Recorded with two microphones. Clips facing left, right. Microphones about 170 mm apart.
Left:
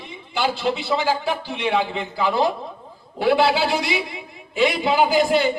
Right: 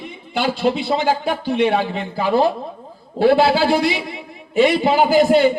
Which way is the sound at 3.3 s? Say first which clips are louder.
Right 2 dB; 45° right (ahead or behind).